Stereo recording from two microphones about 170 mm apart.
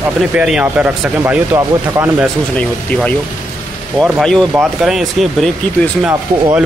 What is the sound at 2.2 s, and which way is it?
Speech, 10° left (ahead or behind).